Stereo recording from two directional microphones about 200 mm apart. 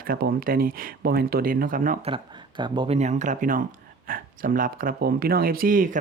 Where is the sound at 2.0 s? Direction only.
25° right (ahead or behind).